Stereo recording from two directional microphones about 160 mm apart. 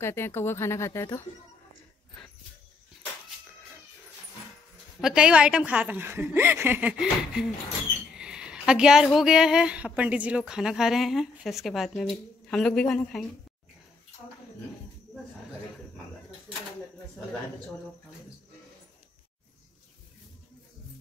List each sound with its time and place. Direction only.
0.0 s speech: 15° left (ahead or behind)
5.0 s a woman's voice: 5° right (ahead or behind)